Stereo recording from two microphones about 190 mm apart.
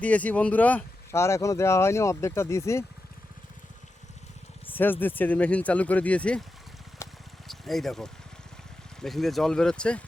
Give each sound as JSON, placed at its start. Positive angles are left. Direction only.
{"t": 0.0, "sound": "speech", "side_deg": 10}
{"t": 4.7, "sound": "speech", "side_deg": 10}
{"t": 7.0, "sound": "a sound", "side_deg": 15}
{"t": 7.4, "sound": "speech", "side_deg": 0}